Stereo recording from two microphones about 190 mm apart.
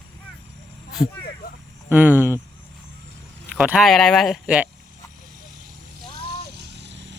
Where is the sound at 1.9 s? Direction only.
10° right (ahead or behind).